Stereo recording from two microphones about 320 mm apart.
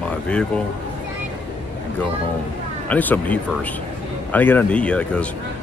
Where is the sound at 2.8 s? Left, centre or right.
Centre.